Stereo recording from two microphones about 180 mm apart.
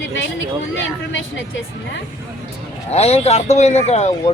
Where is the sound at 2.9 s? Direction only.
35° left (ahead or behind).